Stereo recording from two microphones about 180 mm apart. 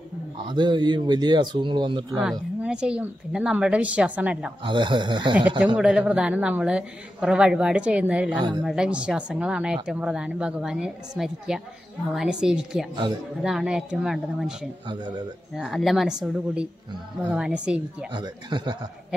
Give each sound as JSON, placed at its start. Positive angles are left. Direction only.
{"t": 0.5, "sound": "speech", "side_deg": -25}
{"t": 2.1, "sound": "speech", "side_deg": -5}
{"t": 4.6, "sound": "speech", "side_deg": -25}
{"t": 5.8, "sound": "a woman's voice", "side_deg": -5}
{"t": 8.4, "sound": "speech", "side_deg": -25}
{"t": 8.6, "sound": "a woman's voice", "side_deg": -5}
{"t": 18.1, "sound": "speech", "side_deg": -25}